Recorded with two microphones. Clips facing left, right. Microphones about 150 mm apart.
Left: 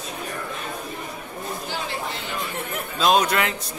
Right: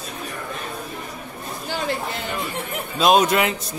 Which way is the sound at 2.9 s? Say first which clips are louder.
Right 3 dB; 15° right (ahead or behind).